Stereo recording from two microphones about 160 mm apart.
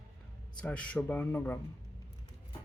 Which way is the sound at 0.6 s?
10° left (ahead or behind).